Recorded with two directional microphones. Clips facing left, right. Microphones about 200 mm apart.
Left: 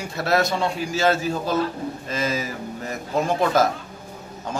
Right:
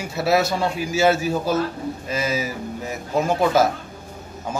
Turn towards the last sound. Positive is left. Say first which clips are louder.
# right 2 dB
turn(degrees=-5)  # may be behind; listen again after turning